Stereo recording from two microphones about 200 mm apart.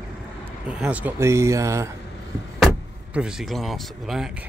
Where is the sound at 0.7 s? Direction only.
5° right (ahead or behind).